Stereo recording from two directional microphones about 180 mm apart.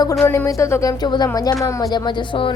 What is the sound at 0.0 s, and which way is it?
Speech, 15° left (ahead or behind).